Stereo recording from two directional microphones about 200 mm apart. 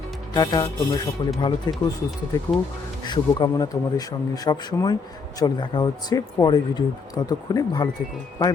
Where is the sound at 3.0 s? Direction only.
20° left (ahead or behind).